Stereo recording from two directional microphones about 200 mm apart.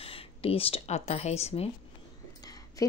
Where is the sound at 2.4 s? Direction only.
20° left (ahead or behind).